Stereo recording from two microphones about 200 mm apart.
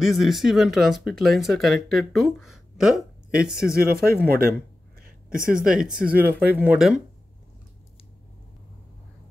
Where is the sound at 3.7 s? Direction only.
50° right (ahead or behind).